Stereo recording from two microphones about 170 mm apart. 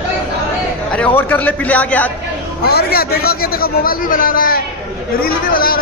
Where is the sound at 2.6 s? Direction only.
65° left (ahead or behind).